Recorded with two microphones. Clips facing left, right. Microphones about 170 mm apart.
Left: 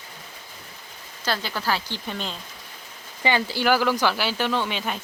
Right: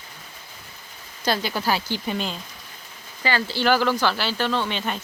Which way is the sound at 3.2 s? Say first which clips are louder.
Even; 15° left (ahead or behind).